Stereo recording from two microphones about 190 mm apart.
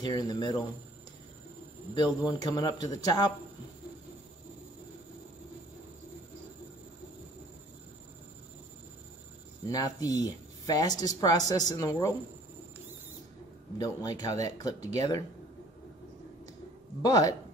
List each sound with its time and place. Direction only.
0.0 s speech: 20° left (ahead or behind)
2.0 s speech: 20° left (ahead or behind)
9.7 s speech: 20° left (ahead or behind)
13.7 s speech: 20° left (ahead or behind)
17.0 s speech: 20° left (ahead or behind)